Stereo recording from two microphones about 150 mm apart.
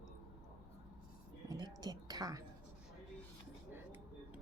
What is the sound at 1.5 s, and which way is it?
Whispering, 25° right (ahead or behind).